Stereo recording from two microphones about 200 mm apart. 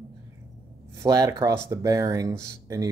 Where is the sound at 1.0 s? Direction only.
15° right (ahead or behind).